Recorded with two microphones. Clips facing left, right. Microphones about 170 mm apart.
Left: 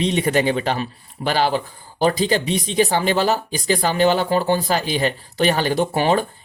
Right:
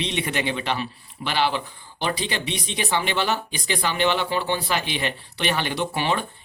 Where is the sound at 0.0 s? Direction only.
40° left (ahead or behind).